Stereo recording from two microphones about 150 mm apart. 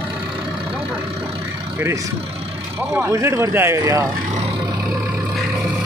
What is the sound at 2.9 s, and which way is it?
Speech, 15° right (ahead or behind).